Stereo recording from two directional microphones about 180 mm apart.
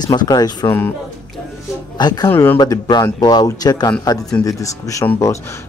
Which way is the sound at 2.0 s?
20° left (ahead or behind).